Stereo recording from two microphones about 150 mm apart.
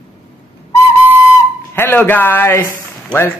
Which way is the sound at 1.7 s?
15° left (ahead or behind).